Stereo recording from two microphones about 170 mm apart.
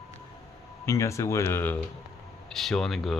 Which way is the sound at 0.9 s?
15° left (ahead or behind).